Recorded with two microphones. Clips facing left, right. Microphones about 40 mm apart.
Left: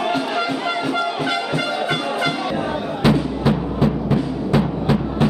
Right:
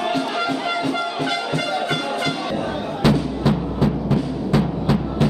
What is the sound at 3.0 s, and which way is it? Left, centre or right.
Music, centre.